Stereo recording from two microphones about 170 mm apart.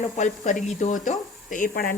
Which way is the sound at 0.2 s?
45° left (ahead or behind).